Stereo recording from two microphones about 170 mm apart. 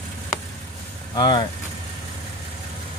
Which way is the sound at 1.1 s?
25° left (ahead or behind).